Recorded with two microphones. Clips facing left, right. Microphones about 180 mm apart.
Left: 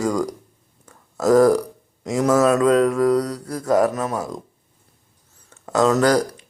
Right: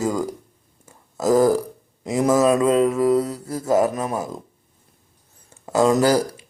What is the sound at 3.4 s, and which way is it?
Mantra, 25° right (ahead or behind).